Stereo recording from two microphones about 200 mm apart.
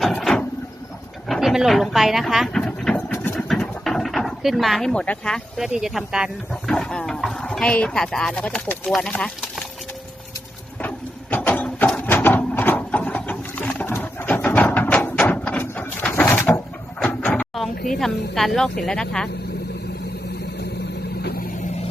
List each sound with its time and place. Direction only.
0.0 s a sound: centre (ahead or behind)
3.3 s speech: centre (ahead or behind)
10.8 s printer: 10° left (ahead or behind)
17.0 s a sound: 10° left (ahead or behind)
17.9 s speech: centre (ahead or behind)
21.2 s vehicle: 50° left (ahead or behind)